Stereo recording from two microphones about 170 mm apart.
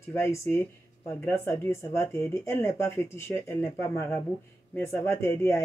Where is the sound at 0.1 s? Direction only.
15° left (ahead or behind).